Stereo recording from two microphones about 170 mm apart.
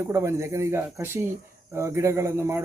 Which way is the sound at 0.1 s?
15° right (ahead or behind).